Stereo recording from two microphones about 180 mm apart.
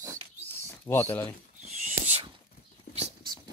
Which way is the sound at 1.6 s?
35° right (ahead or behind).